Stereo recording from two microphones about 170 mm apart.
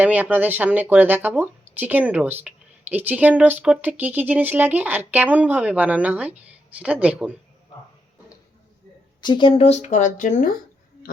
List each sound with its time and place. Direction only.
0.0 s speech: 10° right (ahead or behind)
9.2 s speech: 25° left (ahead or behind); by 10.5 s 50° left (ahead or behind)